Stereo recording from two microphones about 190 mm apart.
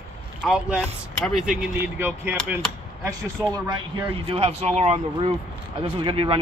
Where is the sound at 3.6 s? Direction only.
20° right (ahead or behind).